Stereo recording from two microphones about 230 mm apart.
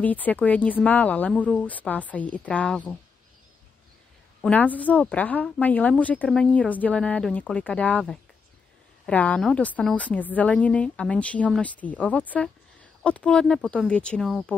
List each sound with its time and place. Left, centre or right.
0.0 s speech: centre
4.4 s a woman's voice: centre